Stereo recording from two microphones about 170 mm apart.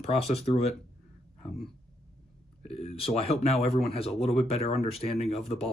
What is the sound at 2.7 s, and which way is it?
Speech, 35° left (ahead or behind).